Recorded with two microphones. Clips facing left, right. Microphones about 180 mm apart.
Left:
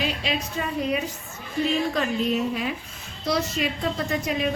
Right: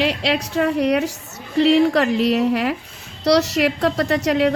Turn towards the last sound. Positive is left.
turn(degrees=-75)  # may be behind; listen again after turning